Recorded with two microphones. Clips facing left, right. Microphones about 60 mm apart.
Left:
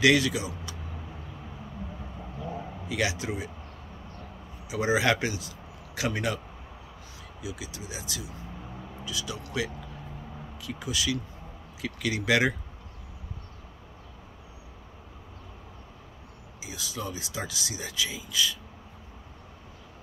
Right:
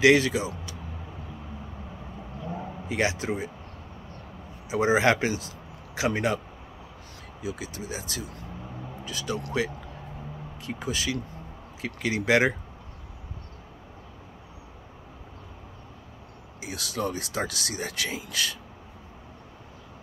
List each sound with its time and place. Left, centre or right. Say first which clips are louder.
0.0 s speech: right 3 dB; right
2.9 s speech: right 3 dB; right
4.6 s speech: right 3 dB; right
7.4 s speech: right 4 dB; right
10.6 s speech: right 1 dB; right
16.6 s speech: right 6 dB; right